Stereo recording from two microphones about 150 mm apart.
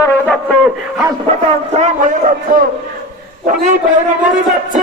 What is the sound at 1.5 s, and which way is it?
A man's voice, 50° right (ahead or behind).